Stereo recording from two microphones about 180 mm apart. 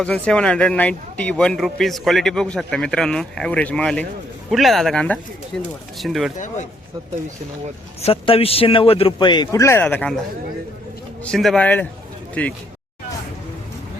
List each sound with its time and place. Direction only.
0.0 s speech: 5° left (ahead or behind)
8.0 s a man's voice: 30° left (ahead or behind); by 10.2 s 5° left (ahead or behind)
11.3 s speech: 5° left (ahead or behind)